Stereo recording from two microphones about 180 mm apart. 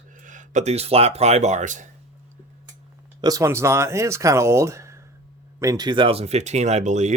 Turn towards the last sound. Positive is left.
turn(degrees=-40)  # may be behind; listen again after turning